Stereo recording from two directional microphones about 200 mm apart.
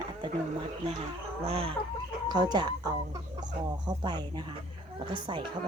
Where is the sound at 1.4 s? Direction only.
30° right (ahead or behind).